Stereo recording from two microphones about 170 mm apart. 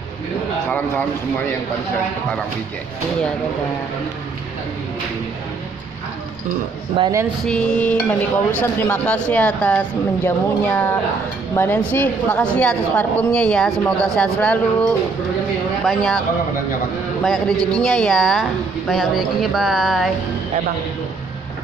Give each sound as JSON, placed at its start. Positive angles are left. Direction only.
{"t": 0.7, "sound": "speech", "side_deg": 10}
{"t": 7.0, "sound": "speech", "side_deg": -30}
{"t": 7.4, "sound": "a woman's voice", "side_deg": 5}
{"t": 17.2, "sound": "a woman's voice", "side_deg": 0}